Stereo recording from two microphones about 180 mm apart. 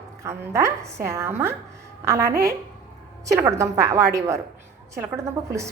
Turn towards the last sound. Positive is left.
turn(degrees=-15)  # may be behind; listen again after turning